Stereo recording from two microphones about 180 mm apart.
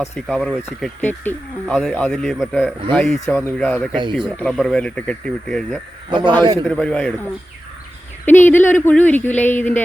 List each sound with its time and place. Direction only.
0.3 s speech: 5° left (ahead or behind)
6.1 s a man's voice: 25° right (ahead or behind)
6.7 s speech: 5° left (ahead or behind)